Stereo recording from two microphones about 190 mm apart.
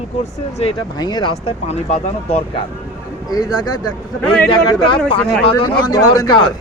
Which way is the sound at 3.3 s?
20° left (ahead or behind).